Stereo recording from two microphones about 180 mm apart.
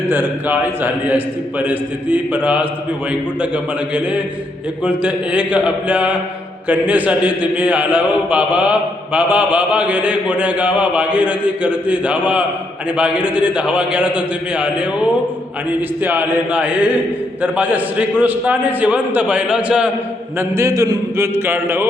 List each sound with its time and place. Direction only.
0.1 s mantra: 10° right (ahead or behind)
16.0 s mantra: 10° right (ahead or behind)